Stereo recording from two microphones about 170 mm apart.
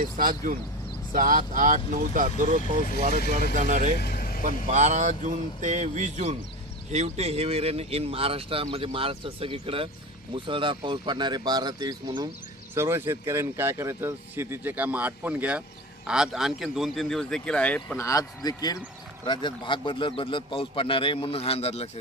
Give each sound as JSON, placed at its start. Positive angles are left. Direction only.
{"t": 0.0, "sound": "speech", "side_deg": -55}
{"t": 4.0, "sound": "vehicle", "side_deg": 60}
{"t": 4.5, "sound": "speech", "side_deg": -45}
{"t": 18.0, "sound": "a man's voice", "side_deg": 20}